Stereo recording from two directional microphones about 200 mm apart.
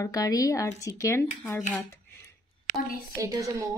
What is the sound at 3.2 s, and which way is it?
Speech, 15° right (ahead or behind).